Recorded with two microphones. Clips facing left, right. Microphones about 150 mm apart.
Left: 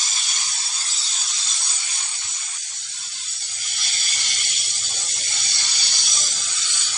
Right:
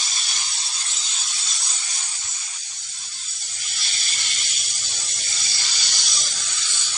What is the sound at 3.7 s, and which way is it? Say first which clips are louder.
Snake: even; 50° left (ahead or behind).